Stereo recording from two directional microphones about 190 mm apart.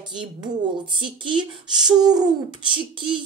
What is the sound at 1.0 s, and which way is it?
A child's voice, 25° right (ahead or behind).